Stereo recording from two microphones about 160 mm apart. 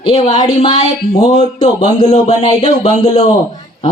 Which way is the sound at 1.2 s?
45° left (ahead or behind).